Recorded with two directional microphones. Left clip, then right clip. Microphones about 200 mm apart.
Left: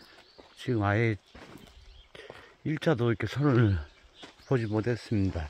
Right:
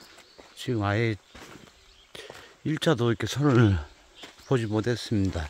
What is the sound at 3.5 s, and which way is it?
Speech, 30° right (ahead or behind).